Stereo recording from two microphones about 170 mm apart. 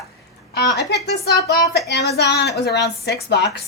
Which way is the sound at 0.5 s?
75° left (ahead or behind).